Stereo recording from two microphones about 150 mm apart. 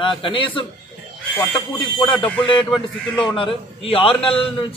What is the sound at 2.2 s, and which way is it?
Speech, 5° left (ahead or behind).